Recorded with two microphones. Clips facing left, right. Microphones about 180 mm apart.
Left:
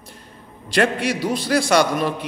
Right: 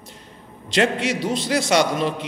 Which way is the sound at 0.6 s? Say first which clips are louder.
Left 1 dB; 20° right (ahead or behind).